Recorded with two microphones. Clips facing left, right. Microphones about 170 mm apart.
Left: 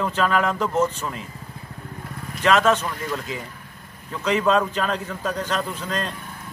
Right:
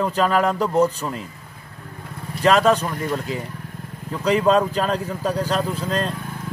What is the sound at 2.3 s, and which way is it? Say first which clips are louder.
Speech: right 2 dB; 35° right (ahead or behind).